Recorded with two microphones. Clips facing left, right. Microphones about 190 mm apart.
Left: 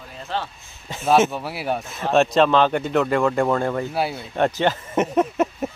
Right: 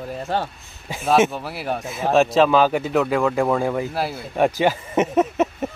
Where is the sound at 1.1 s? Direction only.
Centre (ahead or behind).